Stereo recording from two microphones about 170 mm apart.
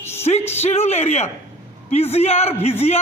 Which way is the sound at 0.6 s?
40° left (ahead or behind).